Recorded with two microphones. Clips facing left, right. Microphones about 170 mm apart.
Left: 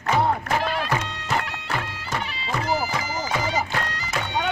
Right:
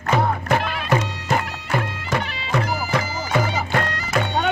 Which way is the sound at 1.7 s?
60° right (ahead or behind).